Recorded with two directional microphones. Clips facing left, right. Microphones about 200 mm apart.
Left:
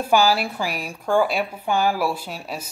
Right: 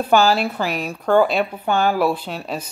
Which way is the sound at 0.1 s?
10° left (ahead or behind).